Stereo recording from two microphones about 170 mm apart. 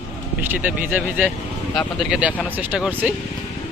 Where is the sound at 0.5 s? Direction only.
10° right (ahead or behind).